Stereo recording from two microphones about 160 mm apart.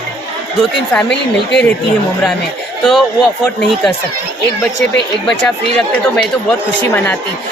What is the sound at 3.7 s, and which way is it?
Speech, centre (ahead or behind).